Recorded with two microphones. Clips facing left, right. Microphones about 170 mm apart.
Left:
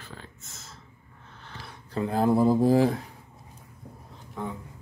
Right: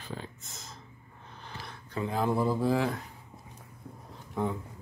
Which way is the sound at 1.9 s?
40° left (ahead or behind).